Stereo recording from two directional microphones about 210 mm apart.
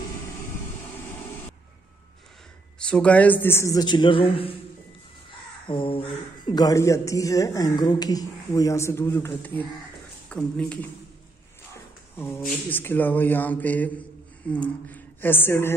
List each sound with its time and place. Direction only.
2.8 s speech: 5° left (ahead or behind); by 4.6 s 25° left (ahead or behind)
5.7 s speech: 25° left (ahead or behind); by 10.9 s 5° left (ahead or behind)
12.2 s speech: 10° left (ahead or behind)